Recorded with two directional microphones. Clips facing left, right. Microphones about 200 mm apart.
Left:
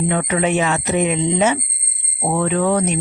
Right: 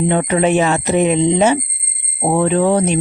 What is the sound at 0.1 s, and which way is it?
Speech, 30° right (ahead or behind).